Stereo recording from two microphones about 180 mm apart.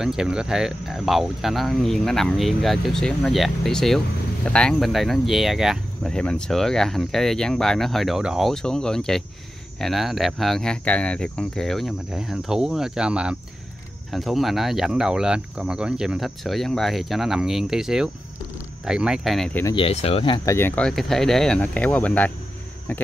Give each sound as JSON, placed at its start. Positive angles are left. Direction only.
{"t": 0.0, "sound": "speech", "side_deg": -5}
{"t": 19.6, "sound": "speech", "side_deg": 30}
{"t": 20.4, "sound": "speech", "side_deg": 10}